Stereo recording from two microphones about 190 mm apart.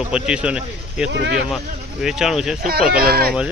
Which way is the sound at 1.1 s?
65° right (ahead or behind).